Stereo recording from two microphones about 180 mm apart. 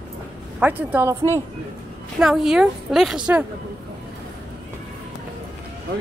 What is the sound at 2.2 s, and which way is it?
A woman's voice, 5° right (ahead or behind).